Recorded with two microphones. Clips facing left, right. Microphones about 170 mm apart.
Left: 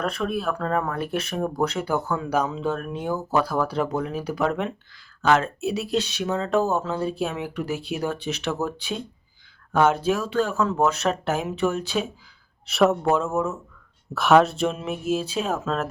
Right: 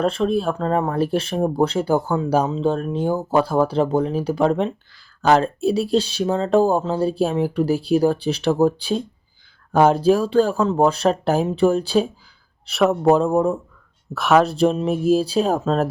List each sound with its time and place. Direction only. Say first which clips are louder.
0.0 s speech: right 6 dB; 30° right (ahead or behind)
12.7 s speech: right 1 dB; centre (ahead or behind)
13.0 s speech: right 7 dB; 35° right (ahead or behind)
14.1 s speech: right 1 dB; centre (ahead or behind)
14.5 s speech: right 8 dB; 35° right (ahead or behind)